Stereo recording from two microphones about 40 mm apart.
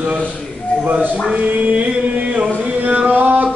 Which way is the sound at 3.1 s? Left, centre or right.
Right.